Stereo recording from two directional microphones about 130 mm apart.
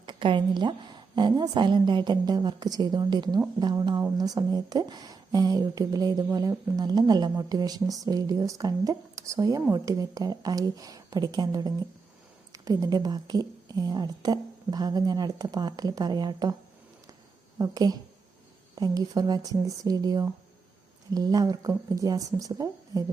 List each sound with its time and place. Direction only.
0.0 s a woman's voice: 40° right (ahead or behind)
17.6 s speech: 30° right (ahead or behind)